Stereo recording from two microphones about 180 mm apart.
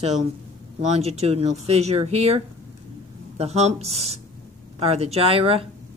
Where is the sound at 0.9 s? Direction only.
35° right (ahead or behind).